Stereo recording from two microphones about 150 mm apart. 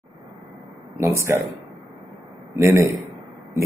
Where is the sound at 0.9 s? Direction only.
20° right (ahead or behind).